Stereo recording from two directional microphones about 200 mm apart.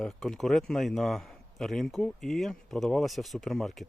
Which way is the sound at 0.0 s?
Centre (ahead or behind).